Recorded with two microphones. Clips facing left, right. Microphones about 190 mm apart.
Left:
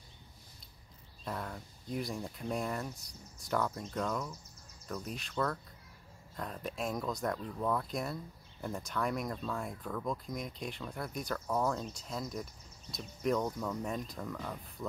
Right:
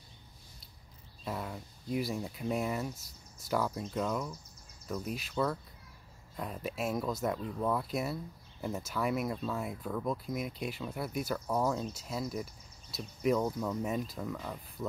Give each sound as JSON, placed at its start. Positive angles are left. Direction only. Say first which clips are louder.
{"t": 1.2, "sound": "speech", "louder": "right 2 dB", "side_deg": -5}